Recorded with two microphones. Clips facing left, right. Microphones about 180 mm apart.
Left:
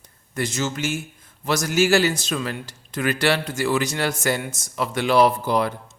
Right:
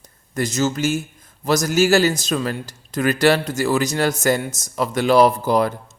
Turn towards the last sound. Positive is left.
turn(degrees=-40)  # may be behind; listen again after turning